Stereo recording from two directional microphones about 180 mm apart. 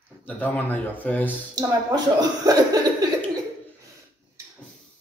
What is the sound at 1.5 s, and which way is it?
Speech, 20° right (ahead or behind).